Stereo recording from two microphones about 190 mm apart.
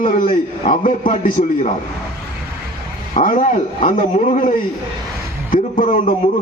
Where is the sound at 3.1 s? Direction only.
45° left (ahead or behind).